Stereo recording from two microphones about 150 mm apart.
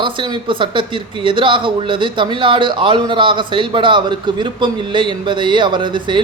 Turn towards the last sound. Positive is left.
turn(degrees=-30)  # may be behind; listen again after turning